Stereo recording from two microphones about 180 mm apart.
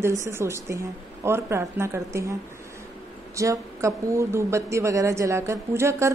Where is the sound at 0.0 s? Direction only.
15° right (ahead or behind).